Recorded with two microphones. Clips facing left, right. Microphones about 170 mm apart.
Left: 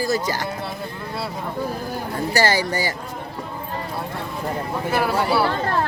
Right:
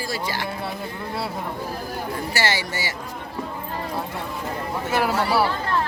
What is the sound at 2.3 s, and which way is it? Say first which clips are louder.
Speech: left 7 dB; 40° left (ahead or behind).